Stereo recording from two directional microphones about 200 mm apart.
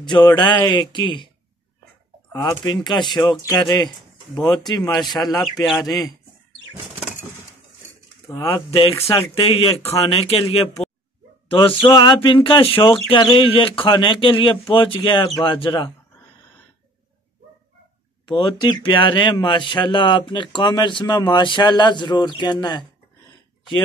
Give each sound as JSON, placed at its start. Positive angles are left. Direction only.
{"t": 0.0, "sound": "speech", "side_deg": 20}
{"t": 2.3, "sound": "speech", "side_deg": 20}
{"t": 5.4, "sound": "speech", "side_deg": 0}
{"t": 8.3, "sound": "speech", "side_deg": 20}
{"t": 9.3, "sound": "speech", "side_deg": 25}
{"t": 18.2, "sound": "speech", "side_deg": 25}